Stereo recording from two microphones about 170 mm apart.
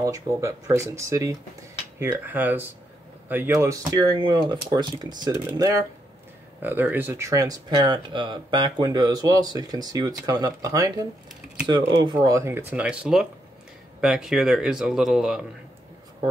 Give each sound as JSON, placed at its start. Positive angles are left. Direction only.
{"t": 0.0, "sound": "speech", "side_deg": -20}